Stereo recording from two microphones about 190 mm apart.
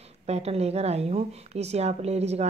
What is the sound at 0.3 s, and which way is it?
A woman's voice, 35° right (ahead or behind).